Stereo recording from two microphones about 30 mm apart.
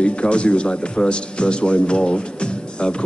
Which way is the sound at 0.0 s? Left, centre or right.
Left.